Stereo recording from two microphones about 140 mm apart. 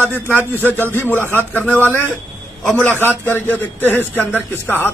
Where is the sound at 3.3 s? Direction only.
15° left (ahead or behind).